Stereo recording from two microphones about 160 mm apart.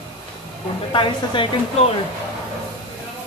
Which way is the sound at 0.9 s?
30° left (ahead or behind).